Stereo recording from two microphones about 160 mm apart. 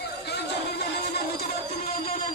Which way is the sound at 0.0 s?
90° left.